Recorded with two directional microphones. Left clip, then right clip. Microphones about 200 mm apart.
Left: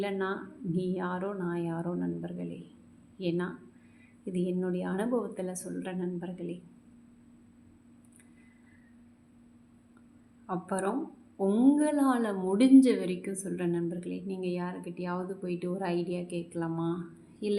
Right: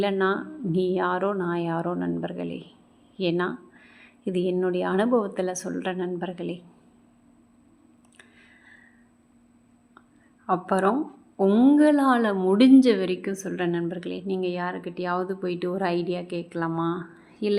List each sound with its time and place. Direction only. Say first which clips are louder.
0.0 s a woman's voice: right 9 dB; 25° right (ahead or behind)
10.4 s a woman's voice: right 10 dB; 20° right (ahead or behind)